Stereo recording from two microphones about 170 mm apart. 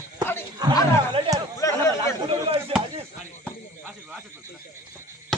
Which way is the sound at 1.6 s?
20° left (ahead or behind).